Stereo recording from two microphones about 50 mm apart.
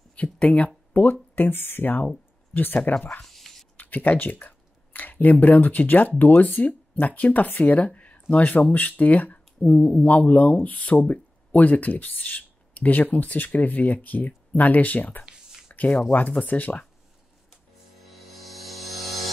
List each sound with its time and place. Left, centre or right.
0.1 s speech: left
1.3 s speech: left
2.8 s speech: left
3.1 s a sound: centre
3.7 s speech: left
15.2 s a sound: centre
16.1 s speech: left
18.0 s music: centre